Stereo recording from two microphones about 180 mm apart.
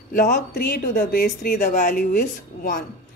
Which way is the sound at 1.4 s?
40° left (ahead or behind).